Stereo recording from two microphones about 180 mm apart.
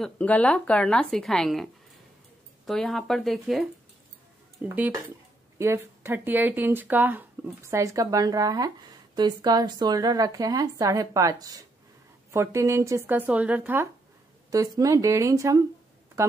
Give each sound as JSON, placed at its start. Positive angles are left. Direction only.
{"t": 0.0, "sound": "a woman's voice", "side_deg": 5}
{"t": 4.6, "sound": "speech", "side_deg": -10}